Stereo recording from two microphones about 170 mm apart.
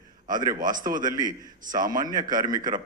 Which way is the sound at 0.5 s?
50° right (ahead or behind).